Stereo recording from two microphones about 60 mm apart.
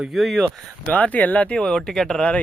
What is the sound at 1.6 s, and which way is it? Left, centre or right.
Speech, centre.